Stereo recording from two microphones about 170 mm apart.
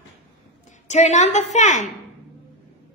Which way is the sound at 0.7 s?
45° left (ahead or behind).